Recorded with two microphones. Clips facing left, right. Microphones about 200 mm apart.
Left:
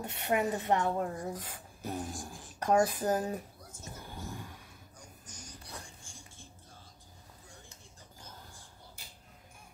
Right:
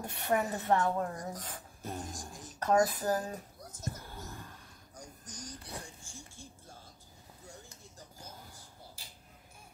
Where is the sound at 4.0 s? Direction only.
15° left (ahead or behind).